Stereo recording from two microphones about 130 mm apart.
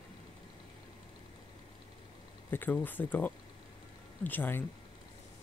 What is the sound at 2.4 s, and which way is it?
Speech, 15° left (ahead or behind).